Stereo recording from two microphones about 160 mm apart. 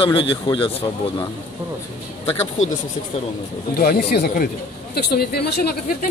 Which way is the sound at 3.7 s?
70° left (ahead or behind).